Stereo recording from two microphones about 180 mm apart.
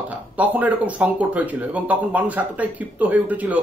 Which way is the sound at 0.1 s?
10° right (ahead or behind).